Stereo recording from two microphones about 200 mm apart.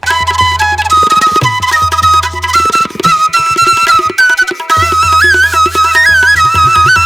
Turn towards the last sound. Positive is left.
turn(degrees=0)  # may be behind; listen again after turning